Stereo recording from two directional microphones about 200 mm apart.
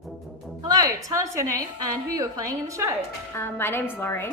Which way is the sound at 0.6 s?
15° right (ahead or behind).